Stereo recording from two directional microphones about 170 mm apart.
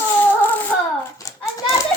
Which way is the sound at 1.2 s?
20° left (ahead or behind).